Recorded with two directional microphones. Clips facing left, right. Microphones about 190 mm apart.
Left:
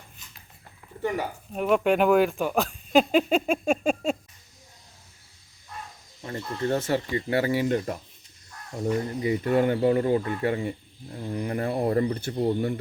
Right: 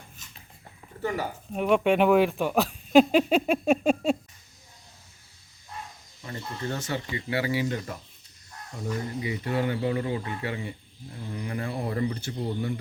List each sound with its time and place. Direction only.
1.1 s speech: centre (ahead or behind)
6.2 s speech: 45° left (ahead or behind)